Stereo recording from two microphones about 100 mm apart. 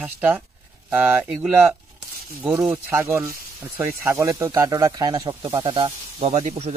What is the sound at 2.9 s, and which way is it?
Speech, 25° right (ahead or behind).